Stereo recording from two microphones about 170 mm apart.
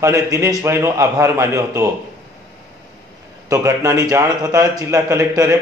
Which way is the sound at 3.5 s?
15° right (ahead or behind).